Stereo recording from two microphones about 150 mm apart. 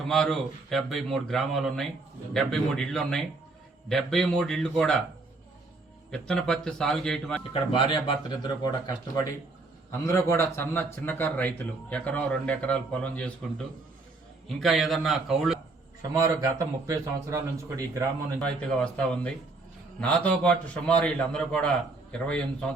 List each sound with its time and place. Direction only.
0.1 s a man's voice: centre (ahead or behind)
6.1 s a man's voice: 5° left (ahead or behind)
7.7 s a man's voice: 30° left (ahead or behind)
10.1 s a man's voice: 20° left (ahead or behind); by 15.5 s centre (ahead or behind)
16.0 s a man's voice: 25° right (ahead or behind)
18.3 s speech: 5° left (ahead or behind)